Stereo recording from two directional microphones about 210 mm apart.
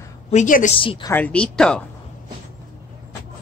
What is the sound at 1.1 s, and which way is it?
Speech, 5° left (ahead or behind).